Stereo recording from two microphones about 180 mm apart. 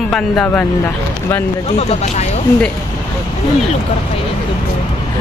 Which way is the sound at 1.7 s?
35° left (ahead or behind).